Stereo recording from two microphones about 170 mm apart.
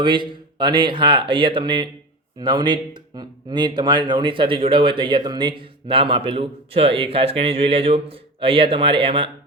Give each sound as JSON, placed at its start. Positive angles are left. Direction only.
{"t": 0.0, "sound": "speech", "side_deg": -25}